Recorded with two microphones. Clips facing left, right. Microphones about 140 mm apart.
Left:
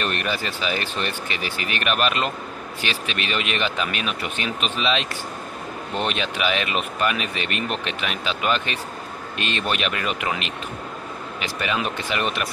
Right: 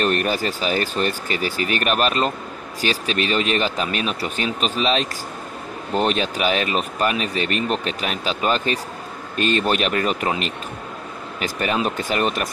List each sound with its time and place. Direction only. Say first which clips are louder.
0.0 s speech: right 5 dB; 40° right (ahead or behind)
11.4 s speech: right 4 dB; 40° right (ahead or behind)